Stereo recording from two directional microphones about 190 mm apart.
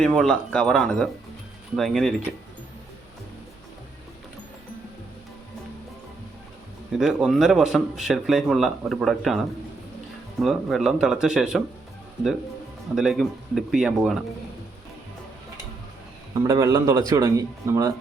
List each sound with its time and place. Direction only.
0.0 s speech: centre (ahead or behind)
7.0 s speech: 5° right (ahead or behind)
13.0 s speech: centre (ahead or behind)
16.3 s speech: 20° right (ahead or behind)